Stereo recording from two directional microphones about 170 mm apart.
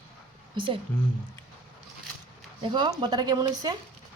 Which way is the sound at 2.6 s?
30° right (ahead or behind).